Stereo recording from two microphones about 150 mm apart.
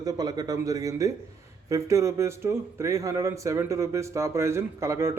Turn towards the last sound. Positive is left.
turn(degrees=-20)  # may be behind; listen again after turning